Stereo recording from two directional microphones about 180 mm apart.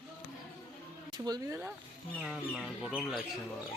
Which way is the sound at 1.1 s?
20° right (ahead or behind).